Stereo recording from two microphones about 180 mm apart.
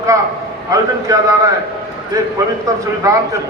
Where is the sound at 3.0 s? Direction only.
20° right (ahead or behind).